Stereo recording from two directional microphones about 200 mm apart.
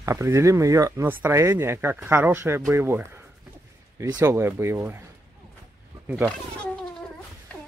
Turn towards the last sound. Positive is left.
turn(degrees=0)  # may be behind; listen again after turning